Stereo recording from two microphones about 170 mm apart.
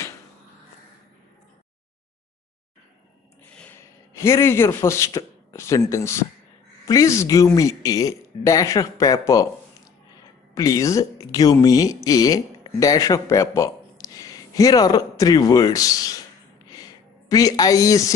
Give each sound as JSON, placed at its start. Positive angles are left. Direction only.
{"t": 3.5, "sound": "a man's voice", "side_deg": 10}
{"t": 10.5, "sound": "speech", "side_deg": 20}
{"t": 16.6, "sound": "a sound", "side_deg": 25}